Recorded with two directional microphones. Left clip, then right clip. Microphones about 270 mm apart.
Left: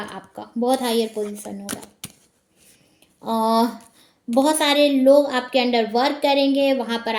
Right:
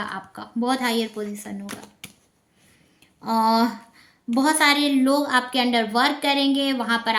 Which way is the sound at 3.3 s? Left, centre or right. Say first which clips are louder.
Even; centre.